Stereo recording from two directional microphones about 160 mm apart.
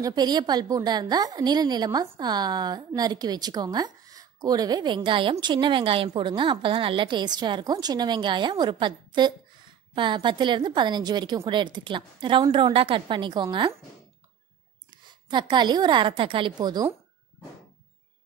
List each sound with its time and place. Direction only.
0.0 s a woman's voice: 25° right (ahead or behind)
14.9 s a woman's voice: 25° right (ahead or behind)